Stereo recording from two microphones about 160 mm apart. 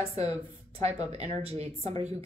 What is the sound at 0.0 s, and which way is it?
Speech, 40° right (ahead or behind).